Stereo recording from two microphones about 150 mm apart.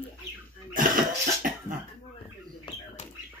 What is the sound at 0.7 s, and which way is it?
Cough, 65° right (ahead or behind).